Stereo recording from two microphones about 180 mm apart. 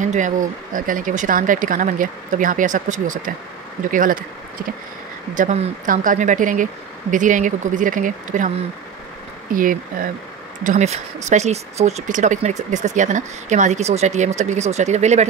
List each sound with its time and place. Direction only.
0.0 s speech: 45° right (ahead or behind)
5.3 s speech: 45° right (ahead or behind)
9.5 s speech: 50° right (ahead or behind)